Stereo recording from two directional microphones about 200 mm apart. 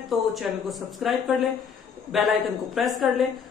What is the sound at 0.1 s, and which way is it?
A woman's voice, centre (ahead or behind).